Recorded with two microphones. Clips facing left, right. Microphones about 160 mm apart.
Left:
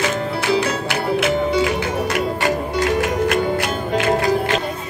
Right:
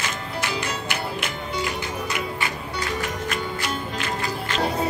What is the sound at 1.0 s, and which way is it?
Music, 80° left.